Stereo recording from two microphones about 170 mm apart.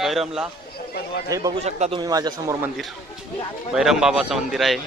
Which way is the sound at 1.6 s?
40° right (ahead or behind).